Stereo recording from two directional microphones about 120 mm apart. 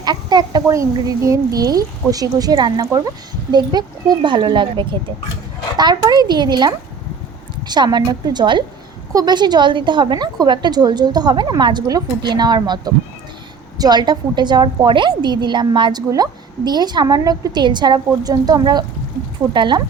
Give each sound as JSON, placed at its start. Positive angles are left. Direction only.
{"t": 0.0, "sound": "speech", "side_deg": -35}
{"t": 0.7, "sound": "a woman's voice", "side_deg": -25}